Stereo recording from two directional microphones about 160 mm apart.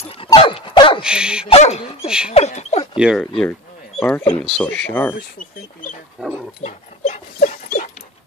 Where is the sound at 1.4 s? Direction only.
40° left (ahead or behind).